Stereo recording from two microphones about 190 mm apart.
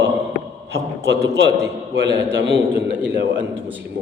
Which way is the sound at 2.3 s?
70° right (ahead or behind).